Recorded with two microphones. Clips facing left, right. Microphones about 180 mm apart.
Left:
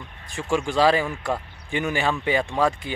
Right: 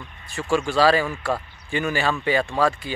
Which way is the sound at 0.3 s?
15° left (ahead or behind).